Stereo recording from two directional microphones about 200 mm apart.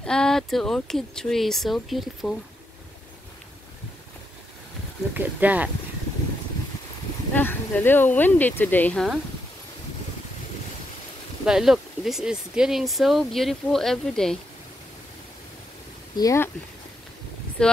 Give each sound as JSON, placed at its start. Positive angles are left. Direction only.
{"t": 0.0, "sound": "speech", "side_deg": 5}
{"t": 5.1, "sound": "speech", "side_deg": -10}
{"t": 7.3, "sound": "speech", "side_deg": 10}
{"t": 11.4, "sound": "speech", "side_deg": -5}
{"t": 16.2, "sound": "speech", "side_deg": 15}
{"t": 17.6, "sound": "speech", "side_deg": 5}